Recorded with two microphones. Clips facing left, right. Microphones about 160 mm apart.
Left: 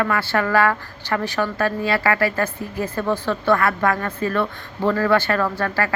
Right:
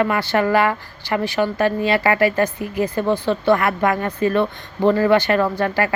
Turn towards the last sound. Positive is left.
turn(degrees=-20)  # may be behind; listen again after turning